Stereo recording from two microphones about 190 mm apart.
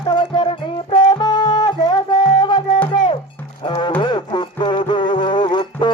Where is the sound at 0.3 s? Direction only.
25° left (ahead or behind).